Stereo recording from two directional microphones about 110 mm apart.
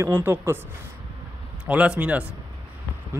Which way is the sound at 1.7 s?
10° right (ahead or behind).